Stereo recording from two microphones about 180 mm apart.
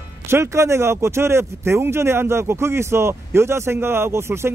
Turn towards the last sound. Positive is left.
turn(degrees=-15)  # may be behind; listen again after turning